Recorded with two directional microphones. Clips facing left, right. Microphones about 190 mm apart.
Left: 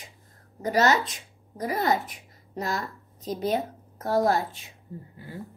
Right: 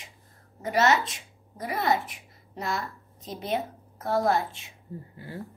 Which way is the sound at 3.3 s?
40° left (ahead or behind).